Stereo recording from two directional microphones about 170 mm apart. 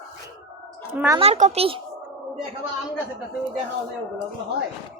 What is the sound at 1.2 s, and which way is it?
Speech, 40° right (ahead or behind).